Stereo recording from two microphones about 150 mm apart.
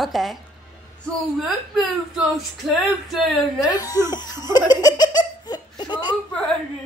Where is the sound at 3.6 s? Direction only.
25° left (ahead or behind).